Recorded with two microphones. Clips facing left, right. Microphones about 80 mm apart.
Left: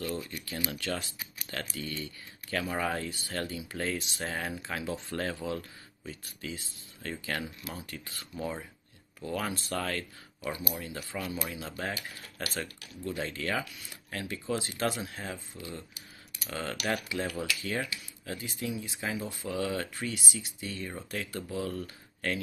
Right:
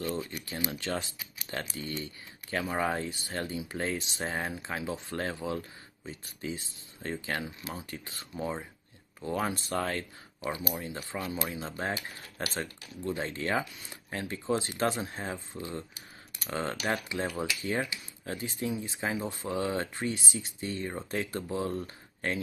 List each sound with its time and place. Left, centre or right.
0.0 s speech: right